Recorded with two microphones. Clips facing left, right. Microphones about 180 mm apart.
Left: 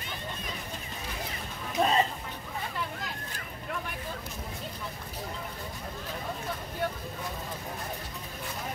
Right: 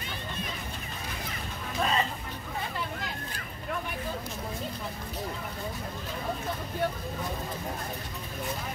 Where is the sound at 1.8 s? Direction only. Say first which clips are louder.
Left 3 dB; 20° left (ahead or behind).